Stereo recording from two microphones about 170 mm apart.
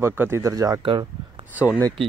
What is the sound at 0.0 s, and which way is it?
Speech, 15° right (ahead or behind).